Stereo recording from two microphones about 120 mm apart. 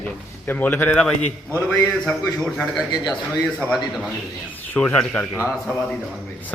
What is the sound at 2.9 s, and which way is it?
Speech, 35° left (ahead or behind).